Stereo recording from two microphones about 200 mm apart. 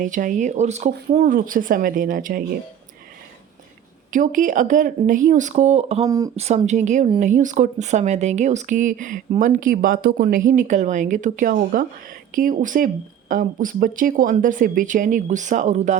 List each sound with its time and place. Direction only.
0.0 s speech: 40° right (ahead or behind)
4.1 s speech: 40° right (ahead or behind)
6.1 s speech: 20° right (ahead or behind)
6.3 s speech: 30° right (ahead or behind)